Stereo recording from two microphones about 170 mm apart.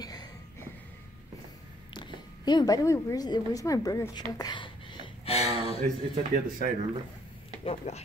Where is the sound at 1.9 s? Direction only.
25° left (ahead or behind).